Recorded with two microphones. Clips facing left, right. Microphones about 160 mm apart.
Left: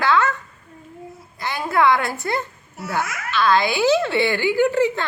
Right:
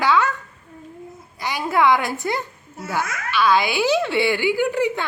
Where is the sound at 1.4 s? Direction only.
15° right (ahead or behind).